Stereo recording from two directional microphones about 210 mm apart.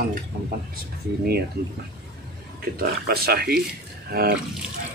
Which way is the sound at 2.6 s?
45° right (ahead or behind).